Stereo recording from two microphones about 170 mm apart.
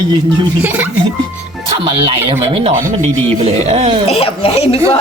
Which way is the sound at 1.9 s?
30° right (ahead or behind).